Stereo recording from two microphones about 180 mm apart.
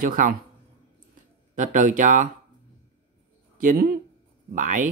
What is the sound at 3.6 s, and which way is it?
Speech, 45° right (ahead or behind).